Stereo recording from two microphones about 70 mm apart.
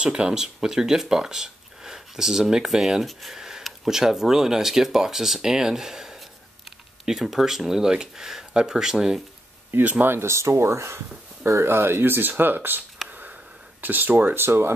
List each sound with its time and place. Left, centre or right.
0.0 s speech: centre
9.8 s speech: right